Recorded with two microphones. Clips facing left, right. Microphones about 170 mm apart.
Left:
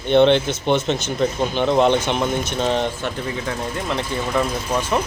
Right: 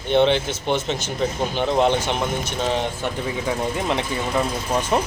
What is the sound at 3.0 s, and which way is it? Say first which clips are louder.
A man's voice: right 1 dB; 15° right (ahead or behind).